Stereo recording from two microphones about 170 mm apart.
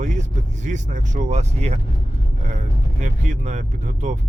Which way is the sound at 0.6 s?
45° right (ahead or behind).